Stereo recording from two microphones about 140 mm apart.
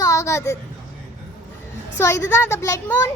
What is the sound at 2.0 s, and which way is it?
A child's voice, 20° left (ahead or behind).